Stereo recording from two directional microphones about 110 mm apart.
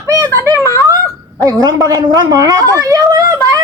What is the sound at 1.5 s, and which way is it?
A woman's voice, 30° right (ahead or behind).